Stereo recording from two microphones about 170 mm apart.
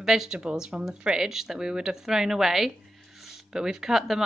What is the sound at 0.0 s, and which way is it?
A woman's voice, 5° right (ahead or behind).